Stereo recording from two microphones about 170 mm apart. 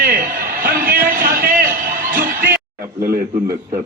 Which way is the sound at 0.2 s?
55° right (ahead or behind).